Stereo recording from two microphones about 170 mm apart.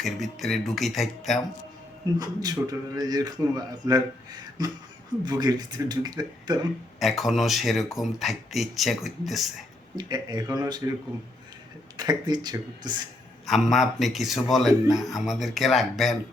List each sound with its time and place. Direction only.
0.0 s speech: centre (ahead or behind)
2.1 s speech: 25° right (ahead or behind)
7.0 s speech: centre (ahead or behind)
9.9 s speech: 25° right (ahead or behind)
11.9 s speech: 25° right (ahead or behind)
13.5 s speech: centre (ahead or behind)